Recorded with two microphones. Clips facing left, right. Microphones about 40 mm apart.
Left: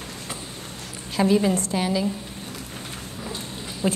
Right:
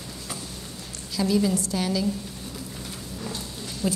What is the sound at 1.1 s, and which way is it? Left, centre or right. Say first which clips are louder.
Speech: left 3 dB; left.